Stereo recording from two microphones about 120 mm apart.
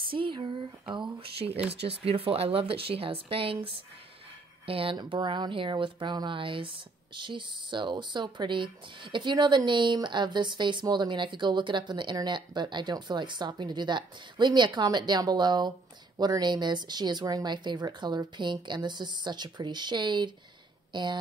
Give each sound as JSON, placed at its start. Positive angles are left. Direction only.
{"t": 0.1, "sound": "speech", "side_deg": -45}